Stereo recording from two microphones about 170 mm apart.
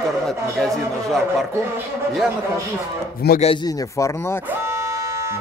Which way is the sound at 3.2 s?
70° left (ahead or behind).